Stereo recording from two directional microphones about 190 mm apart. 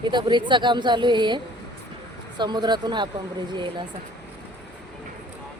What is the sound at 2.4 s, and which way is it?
Speech, 25° right (ahead or behind).